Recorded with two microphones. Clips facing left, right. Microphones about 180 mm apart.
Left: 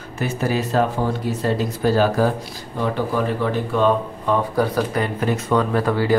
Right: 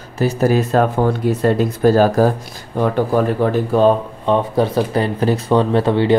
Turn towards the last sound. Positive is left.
turn(degrees=-25)  # may be behind; listen again after turning